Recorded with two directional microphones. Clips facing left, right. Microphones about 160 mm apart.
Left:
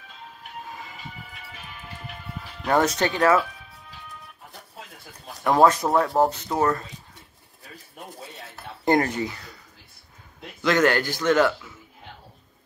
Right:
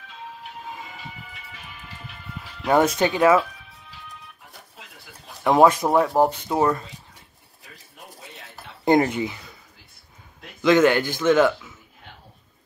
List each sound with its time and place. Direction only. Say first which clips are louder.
2.6 s speech: right 3 dB; 15° right (ahead or behind)
5.4 s speech: right 2 dB; 15° right (ahead or behind)
8.8 s speech: right 3 dB; 20° right (ahead or behind)
10.6 s speech: right 4 dB; 20° right (ahead or behind)